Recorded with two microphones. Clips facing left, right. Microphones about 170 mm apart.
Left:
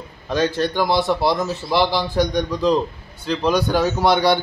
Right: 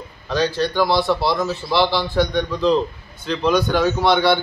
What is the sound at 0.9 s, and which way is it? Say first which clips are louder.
Speech: even; 20° left (ahead or behind).